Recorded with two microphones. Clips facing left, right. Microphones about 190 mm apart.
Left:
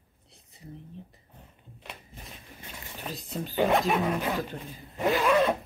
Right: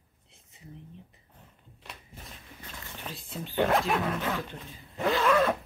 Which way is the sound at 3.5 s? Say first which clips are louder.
Left 1 dB; centre (ahead or behind).